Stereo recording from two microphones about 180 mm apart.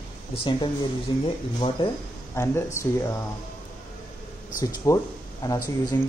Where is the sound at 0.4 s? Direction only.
25° left (ahead or behind).